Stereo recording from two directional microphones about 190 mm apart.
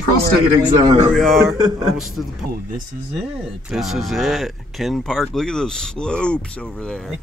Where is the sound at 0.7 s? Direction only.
20° right (ahead or behind).